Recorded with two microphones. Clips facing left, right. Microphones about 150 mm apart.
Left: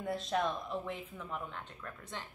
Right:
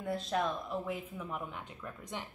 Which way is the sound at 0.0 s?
Centre (ahead or behind).